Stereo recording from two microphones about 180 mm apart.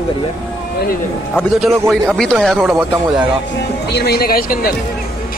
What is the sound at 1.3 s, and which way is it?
Speech, centre (ahead or behind).